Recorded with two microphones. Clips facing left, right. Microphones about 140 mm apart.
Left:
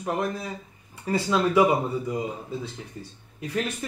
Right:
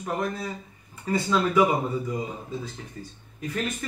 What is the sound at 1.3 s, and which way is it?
Speech, 20° left (ahead or behind).